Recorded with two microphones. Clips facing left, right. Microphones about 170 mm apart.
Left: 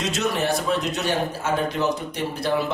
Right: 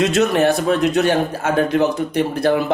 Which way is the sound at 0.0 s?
60° right (ahead or behind).